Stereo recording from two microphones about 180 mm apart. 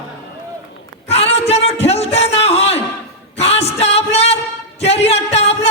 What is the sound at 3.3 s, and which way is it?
Music, 35° left (ahead or behind).